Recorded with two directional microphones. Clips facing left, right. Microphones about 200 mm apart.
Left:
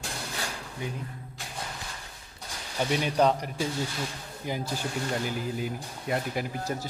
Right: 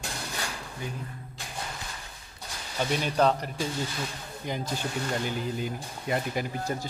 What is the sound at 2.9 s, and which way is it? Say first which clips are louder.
Speech: even; 15° left (ahead or behind).